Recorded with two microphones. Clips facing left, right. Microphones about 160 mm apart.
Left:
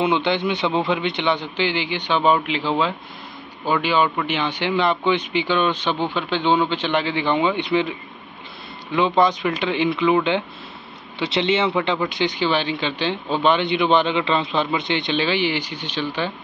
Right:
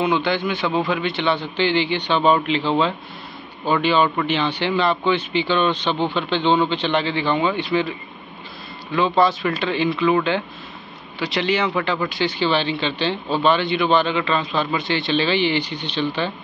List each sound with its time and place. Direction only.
0.0 s a man's voice: 20° left (ahead or behind)
8.9 s a man's voice: 20° left (ahead or behind)